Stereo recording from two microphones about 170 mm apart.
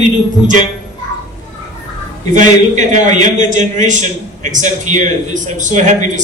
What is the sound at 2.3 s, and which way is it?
A man's voice, 45° right (ahead or behind).